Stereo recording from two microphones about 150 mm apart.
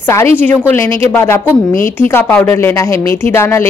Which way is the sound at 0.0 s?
15° left (ahead or behind).